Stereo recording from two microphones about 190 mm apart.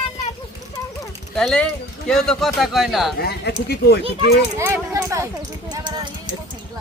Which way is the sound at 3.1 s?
55° left (ahead or behind).